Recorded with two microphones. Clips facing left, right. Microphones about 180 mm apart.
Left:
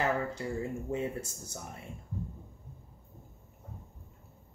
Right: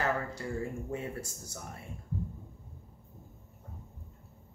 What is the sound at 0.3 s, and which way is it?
Speech, 20° left (ahead or behind).